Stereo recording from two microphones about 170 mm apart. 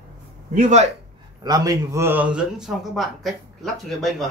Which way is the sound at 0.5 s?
45° right (ahead or behind).